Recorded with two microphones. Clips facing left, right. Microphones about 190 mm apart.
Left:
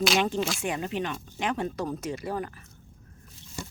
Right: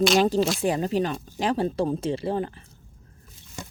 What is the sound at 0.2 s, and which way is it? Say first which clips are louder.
Speech: right 6 dB; 35° right (ahead or behind).